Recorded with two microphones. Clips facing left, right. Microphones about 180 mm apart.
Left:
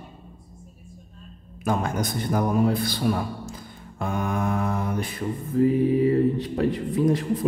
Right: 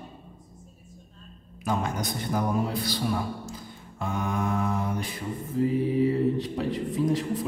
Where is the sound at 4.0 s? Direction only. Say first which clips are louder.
Left 3 dB; 55° left (ahead or behind).